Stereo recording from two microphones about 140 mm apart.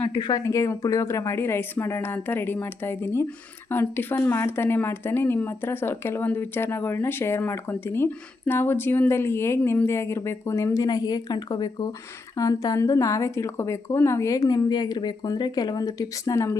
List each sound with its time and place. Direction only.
0.0 s speech: 35° left (ahead or behind)
0.4 s a woman's voice: 20° left (ahead or behind)